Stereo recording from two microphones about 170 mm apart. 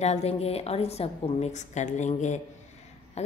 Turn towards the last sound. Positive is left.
turn(degrees=40)  # may be behind; listen again after turning